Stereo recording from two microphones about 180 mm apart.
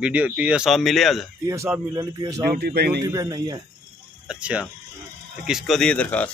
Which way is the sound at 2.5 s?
65° right (ahead or behind).